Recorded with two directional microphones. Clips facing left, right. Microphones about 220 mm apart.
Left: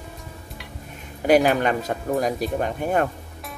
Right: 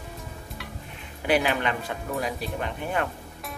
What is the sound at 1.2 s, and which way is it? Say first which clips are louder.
Speech: left 7 dB; 45° left (ahead or behind).